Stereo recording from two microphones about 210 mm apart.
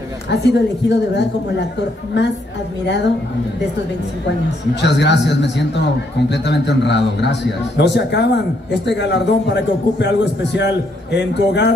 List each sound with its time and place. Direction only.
0.3 s a man's voice: 55° left (ahead or behind)
4.8 s a man's voice: 55° left (ahead or behind)